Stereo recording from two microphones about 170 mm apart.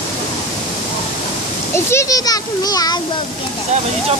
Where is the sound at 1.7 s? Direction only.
15° left (ahead or behind).